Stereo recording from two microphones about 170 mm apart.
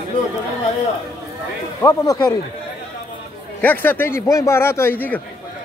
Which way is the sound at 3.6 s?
10° left (ahead or behind).